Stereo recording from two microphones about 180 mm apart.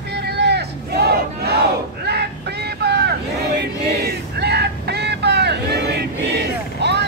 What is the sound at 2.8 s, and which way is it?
Vehicle, 65° right (ahead or behind).